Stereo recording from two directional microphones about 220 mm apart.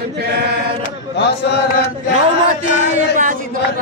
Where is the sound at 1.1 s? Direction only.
50° left (ahead or behind).